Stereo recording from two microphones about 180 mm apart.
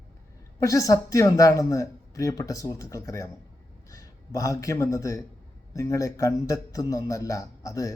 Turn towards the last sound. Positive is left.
turn(degrees=20)  # may be behind; listen again after turning